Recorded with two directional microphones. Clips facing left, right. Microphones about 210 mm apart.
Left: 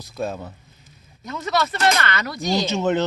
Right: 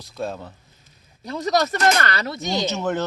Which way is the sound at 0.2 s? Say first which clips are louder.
Left 2 dB; 5° left (ahead or behind).